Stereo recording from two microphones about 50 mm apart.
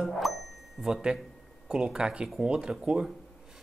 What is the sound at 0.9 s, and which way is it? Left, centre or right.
Speech, centre.